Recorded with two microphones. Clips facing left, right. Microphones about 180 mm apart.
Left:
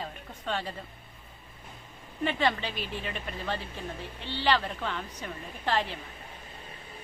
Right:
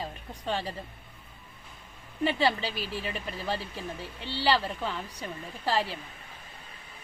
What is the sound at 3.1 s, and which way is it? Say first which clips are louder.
A woman's voice: right 1 dB; 10° right (ahead or behind).